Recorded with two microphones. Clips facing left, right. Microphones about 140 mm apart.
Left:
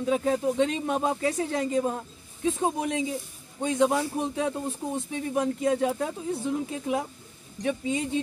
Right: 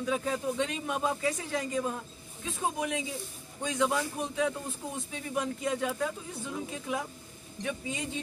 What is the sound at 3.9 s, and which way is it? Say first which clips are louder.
A man's voice: left 5 dB; 25° left (ahead or behind).